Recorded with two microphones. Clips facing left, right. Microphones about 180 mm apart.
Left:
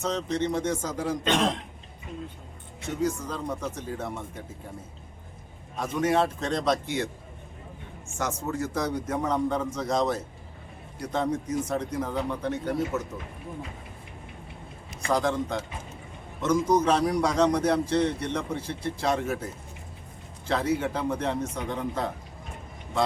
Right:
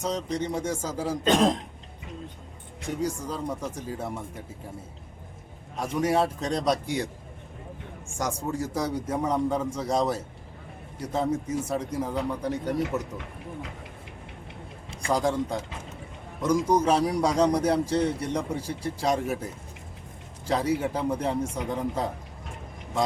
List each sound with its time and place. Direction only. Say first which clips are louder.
0.0 s a man's voice: left 1 dB; 10° right (ahead or behind)
1.2 s speech: right 5 dB; 35° right (ahead or behind)
3.0 s a man's voice: left 2 dB; 10° right (ahead or behind)
5.7 s a man's voice: even; 10° right (ahead or behind)
8.2 s a man's voice: even; 10° right (ahead or behind)
12.8 s speech: even; 75° right (ahead or behind)
15.0 s speech: even; 10° right (ahead or behind)
16.4 s a man's voice: even; 10° right (ahead or behind)
20.5 s a man's voice: right 1 dB; 10° right (ahead or behind)